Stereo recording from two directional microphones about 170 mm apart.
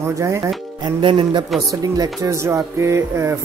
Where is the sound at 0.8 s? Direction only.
30° right (ahead or behind).